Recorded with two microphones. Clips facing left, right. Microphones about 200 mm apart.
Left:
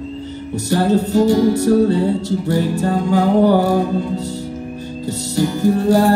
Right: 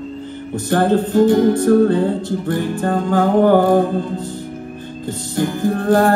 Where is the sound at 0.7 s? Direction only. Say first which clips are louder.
Right 1 dB; 55° right (ahead or behind).